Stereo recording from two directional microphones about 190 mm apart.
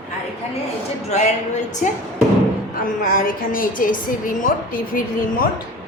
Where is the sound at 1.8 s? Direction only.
45° left (ahead or behind).